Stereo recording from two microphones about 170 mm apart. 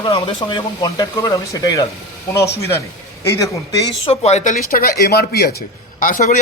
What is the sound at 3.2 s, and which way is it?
Speech, 20° left (ahead or behind).